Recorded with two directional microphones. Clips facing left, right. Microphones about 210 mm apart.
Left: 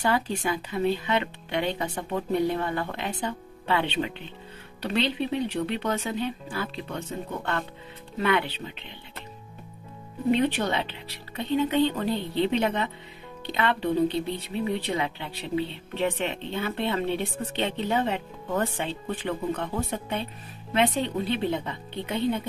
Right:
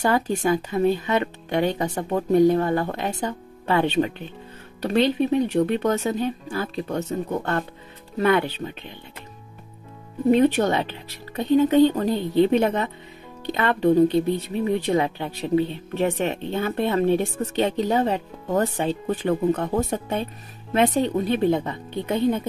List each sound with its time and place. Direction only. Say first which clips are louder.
0.0 s speech: right 5 dB; 45° right (ahead or behind)
10.3 s speech: right 6 dB; 45° right (ahead or behind)